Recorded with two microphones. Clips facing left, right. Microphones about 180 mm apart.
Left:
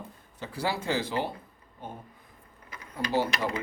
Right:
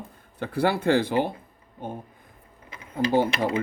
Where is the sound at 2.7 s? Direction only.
25° right (ahead or behind).